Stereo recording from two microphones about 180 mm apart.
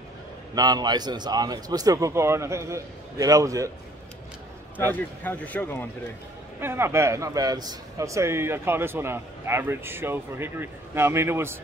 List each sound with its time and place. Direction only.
0.6 s a man's voice: 20° right (ahead or behind)
4.7 s speech: 10° left (ahead or behind)
6.6 s a man's voice: 15° right (ahead or behind)